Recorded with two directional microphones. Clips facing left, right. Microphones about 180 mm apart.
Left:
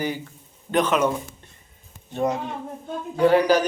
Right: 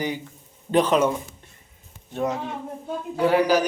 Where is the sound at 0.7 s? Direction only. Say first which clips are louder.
Right 2 dB; 30° right (ahead or behind).